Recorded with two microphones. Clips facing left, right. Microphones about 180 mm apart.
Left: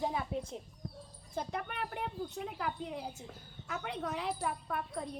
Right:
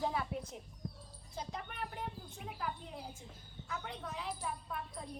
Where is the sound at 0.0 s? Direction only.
20° left (ahead or behind).